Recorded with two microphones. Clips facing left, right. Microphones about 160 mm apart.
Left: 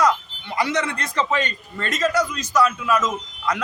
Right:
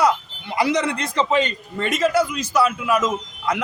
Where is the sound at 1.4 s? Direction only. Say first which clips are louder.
Right 4 dB; 10° right (ahead or behind).